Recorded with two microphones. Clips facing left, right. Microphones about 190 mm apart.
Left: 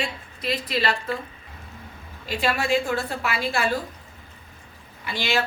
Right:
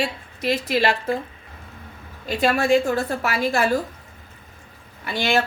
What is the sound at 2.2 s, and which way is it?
Speech, 45° right (ahead or behind).